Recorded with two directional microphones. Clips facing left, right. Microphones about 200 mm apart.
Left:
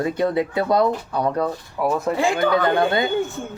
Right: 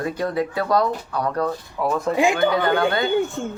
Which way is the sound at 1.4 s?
5° left (ahead or behind).